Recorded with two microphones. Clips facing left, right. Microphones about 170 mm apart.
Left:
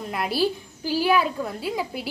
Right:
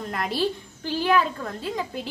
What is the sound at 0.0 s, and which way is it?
A woman's voice, 5° left (ahead or behind).